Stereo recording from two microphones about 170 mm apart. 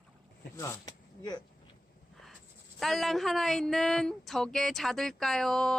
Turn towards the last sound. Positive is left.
turn(degrees=5)  # may be behind; listen again after turning